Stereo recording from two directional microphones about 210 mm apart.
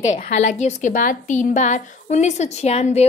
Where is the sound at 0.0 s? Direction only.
35° left (ahead or behind).